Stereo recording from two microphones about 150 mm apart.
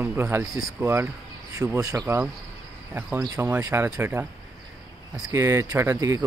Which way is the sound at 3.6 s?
15° right (ahead or behind).